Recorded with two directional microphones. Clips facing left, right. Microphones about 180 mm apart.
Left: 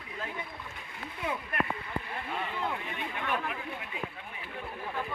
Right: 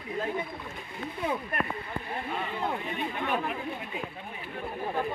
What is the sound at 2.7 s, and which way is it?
Speech, 35° right (ahead or behind).